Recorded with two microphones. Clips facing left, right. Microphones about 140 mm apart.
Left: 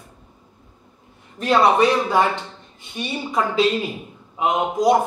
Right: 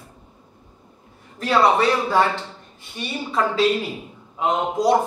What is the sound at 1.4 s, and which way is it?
Speech, 15° left (ahead or behind).